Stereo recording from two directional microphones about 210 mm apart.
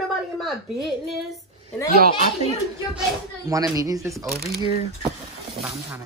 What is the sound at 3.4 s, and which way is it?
Speech, 15° right (ahead or behind).